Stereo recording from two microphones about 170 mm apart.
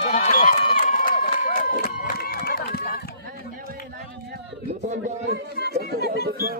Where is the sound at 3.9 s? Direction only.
70° right (ahead or behind).